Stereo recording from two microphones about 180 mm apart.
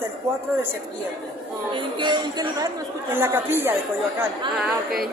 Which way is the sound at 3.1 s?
10° right (ahead or behind).